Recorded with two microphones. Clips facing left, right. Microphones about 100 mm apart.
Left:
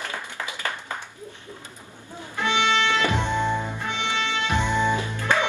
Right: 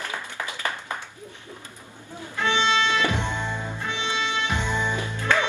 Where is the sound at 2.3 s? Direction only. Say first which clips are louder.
Even; 20° left (ahead or behind).